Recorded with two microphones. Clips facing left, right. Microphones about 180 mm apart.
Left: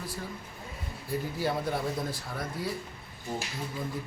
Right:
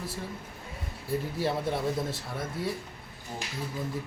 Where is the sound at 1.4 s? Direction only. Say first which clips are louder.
Even; 25° right (ahead or behind).